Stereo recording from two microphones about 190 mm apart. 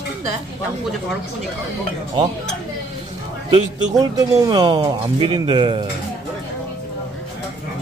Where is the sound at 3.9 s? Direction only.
20° right (ahead or behind).